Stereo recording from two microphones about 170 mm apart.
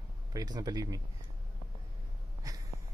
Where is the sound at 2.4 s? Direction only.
20° right (ahead or behind).